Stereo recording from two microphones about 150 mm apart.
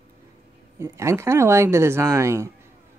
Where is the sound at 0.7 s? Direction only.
20° right (ahead or behind).